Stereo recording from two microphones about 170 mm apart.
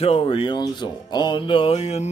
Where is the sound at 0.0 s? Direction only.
35° left (ahead or behind).